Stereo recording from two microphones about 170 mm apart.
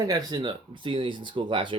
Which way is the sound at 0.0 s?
20° right (ahead or behind).